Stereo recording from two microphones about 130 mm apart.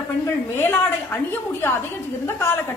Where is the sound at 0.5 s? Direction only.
15° left (ahead or behind).